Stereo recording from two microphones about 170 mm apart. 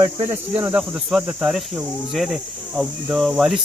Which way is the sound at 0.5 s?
10° right (ahead or behind).